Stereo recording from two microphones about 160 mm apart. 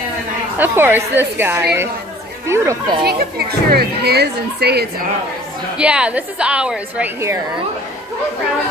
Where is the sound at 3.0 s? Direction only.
75° right (ahead or behind).